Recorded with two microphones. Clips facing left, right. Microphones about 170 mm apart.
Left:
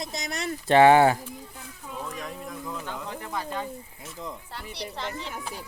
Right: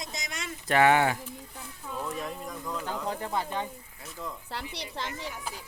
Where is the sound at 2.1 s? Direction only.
Centre (ahead or behind).